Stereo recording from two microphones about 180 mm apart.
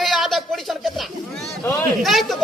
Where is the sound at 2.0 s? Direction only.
Centre (ahead or behind).